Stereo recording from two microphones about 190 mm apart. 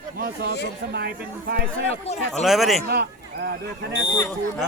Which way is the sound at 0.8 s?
55° right (ahead or behind).